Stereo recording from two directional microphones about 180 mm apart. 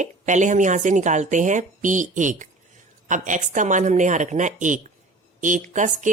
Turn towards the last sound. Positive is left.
turn(degrees=-45)  # may be behind; listen again after turning